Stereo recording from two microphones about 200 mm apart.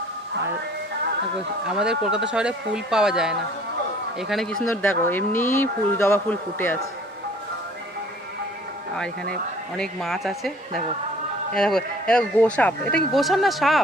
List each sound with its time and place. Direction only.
1.6 s speech: 5° right (ahead or behind)
9.3 s speech: 5° left (ahead or behind)
11.5 s speech: 5° left (ahead or behind)